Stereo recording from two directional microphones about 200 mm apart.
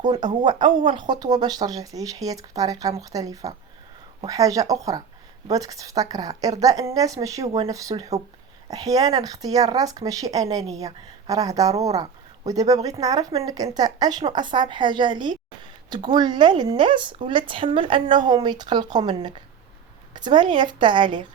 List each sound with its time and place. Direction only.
0.0 s speech: 20° right (ahead or behind)